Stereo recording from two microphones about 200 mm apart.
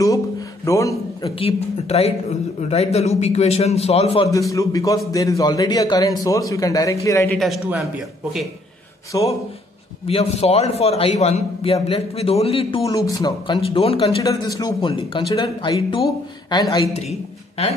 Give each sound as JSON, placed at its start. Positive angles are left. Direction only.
{"t": 0.7, "sound": "a man's voice", "side_deg": 15}
{"t": 1.4, "sound": "a man's voice", "side_deg": 30}
{"t": 4.3, "sound": "a man's voice", "side_deg": 15}
{"t": 7.3, "sound": "speech", "side_deg": 0}
{"t": 9.1, "sound": "a man's voice", "side_deg": 15}
{"t": 10.0, "sound": "a man's voice", "side_deg": 30}